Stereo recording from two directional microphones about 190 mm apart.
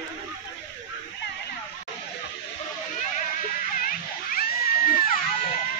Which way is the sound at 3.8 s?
50° left (ahead or behind).